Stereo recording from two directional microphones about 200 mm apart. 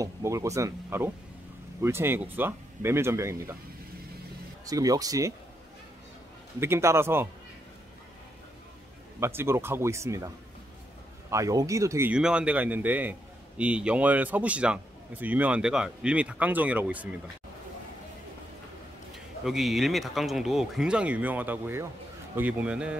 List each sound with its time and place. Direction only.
0.0 s a man's voice: 15° right (ahead or behind)
4.6 s a man's voice: 15° right (ahead or behind)
6.6 s a man's voice: 15° right (ahead or behind)
9.2 s a man's voice: 10° right (ahead or behind)
19.4 s a man's voice: centre (ahead or behind)